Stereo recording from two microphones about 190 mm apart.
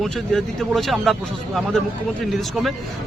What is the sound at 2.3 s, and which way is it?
Speech, centre (ahead or behind).